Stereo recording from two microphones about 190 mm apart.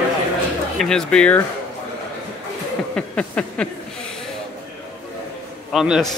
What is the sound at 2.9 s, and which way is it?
Speech, 5° left (ahead or behind).